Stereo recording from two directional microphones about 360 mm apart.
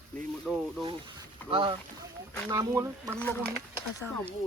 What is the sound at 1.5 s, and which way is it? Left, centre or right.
Speech, centre.